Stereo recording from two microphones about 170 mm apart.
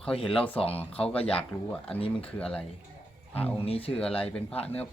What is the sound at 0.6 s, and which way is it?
A man's voice, 35° left (ahead or behind).